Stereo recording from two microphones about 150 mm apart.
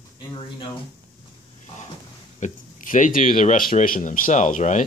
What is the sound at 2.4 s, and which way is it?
Speech, 60° left (ahead or behind).